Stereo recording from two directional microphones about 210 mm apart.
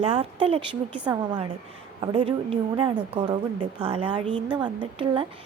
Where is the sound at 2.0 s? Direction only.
25° right (ahead or behind).